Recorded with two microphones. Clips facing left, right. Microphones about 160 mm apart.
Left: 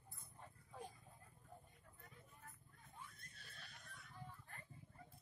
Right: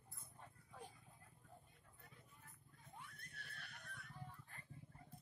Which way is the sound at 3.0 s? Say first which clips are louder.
Right 1 dB; 65° right (ahead or behind).